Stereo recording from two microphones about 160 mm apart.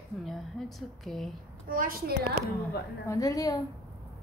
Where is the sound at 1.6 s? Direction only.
65° right (ahead or behind).